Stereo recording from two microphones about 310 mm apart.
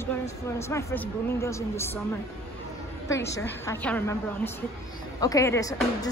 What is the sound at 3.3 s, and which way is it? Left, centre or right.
Speech, centre.